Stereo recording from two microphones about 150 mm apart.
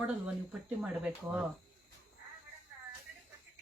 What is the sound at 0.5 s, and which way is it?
Speech, 10° right (ahead or behind).